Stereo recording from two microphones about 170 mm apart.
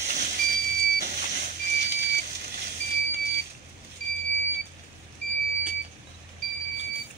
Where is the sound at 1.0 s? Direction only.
70° right (ahead or behind).